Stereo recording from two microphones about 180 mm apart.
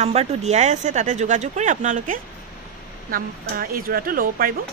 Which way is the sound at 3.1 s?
55° right (ahead or behind).